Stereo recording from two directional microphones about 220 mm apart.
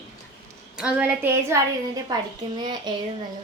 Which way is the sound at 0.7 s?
5° right (ahead or behind).